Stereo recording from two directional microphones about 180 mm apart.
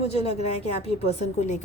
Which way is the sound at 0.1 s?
35° left (ahead or behind).